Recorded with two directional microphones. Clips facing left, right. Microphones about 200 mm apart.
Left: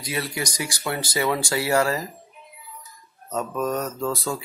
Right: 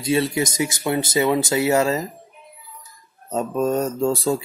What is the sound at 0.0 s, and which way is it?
Speech, 25° right (ahead or behind).